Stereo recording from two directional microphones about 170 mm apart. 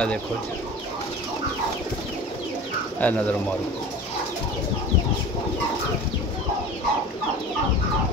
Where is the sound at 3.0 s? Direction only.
10° left (ahead or behind).